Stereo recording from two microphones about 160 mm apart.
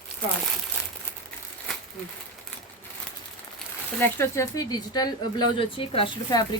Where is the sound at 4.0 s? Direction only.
15° left (ahead or behind).